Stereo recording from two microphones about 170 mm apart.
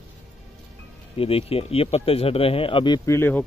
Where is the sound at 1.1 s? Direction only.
35° left (ahead or behind).